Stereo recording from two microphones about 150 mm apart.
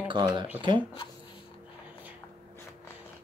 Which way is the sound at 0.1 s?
30° right (ahead or behind).